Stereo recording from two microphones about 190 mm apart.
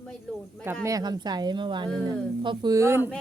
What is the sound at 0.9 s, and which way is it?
Speech, 20° right (ahead or behind).